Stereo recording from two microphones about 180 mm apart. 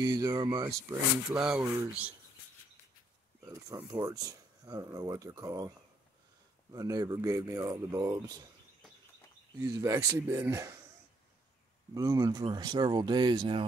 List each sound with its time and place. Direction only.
0.0 s speech: 20° right (ahead or behind)
1.4 s speech: 5° right (ahead or behind)
3.5 s speech: 20° right (ahead or behind)
6.7 s speech: 20° right (ahead or behind)
9.6 s speech: 20° right (ahead or behind)
11.9 s speech: 20° right (ahead or behind)